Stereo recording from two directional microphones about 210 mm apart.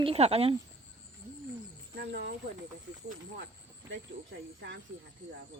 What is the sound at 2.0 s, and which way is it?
Cricket, 55° right (ahead or behind).